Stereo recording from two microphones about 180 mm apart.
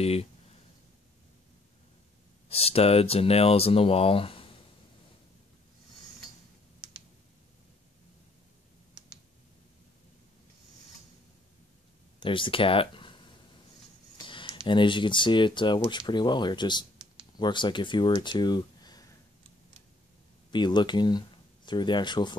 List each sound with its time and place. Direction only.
0.0 s speech: 35° left (ahead or behind)
2.5 s speech: 35° left (ahead or behind)
6.8 s clicking: 25° right (ahead or behind)
12.2 s speech: 30° left (ahead or behind)
14.1 s a sound: 25° left (ahead or behind)
14.7 s speech: 25° left (ahead or behind)
20.5 s speech: 25° left (ahead or behind)